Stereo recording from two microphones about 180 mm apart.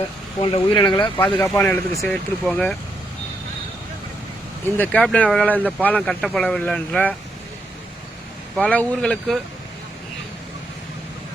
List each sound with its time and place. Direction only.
0.4 s speech: 30° left (ahead or behind)
1.2 s speech: 10° left (ahead or behind)
4.8 s speech: 5° left (ahead or behind)
8.5 s speech: 5° left (ahead or behind)